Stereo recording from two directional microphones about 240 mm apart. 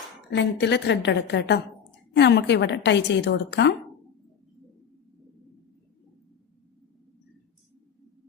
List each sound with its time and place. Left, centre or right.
0.3 s a woman's voice: left